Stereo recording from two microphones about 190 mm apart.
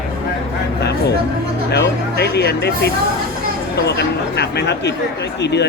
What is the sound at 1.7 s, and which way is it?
Speech, 65° left (ahead or behind).